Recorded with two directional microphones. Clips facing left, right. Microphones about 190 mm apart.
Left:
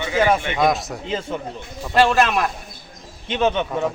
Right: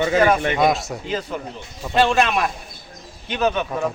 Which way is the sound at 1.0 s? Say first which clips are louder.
Left 1 dB; 25° left (ahead or behind).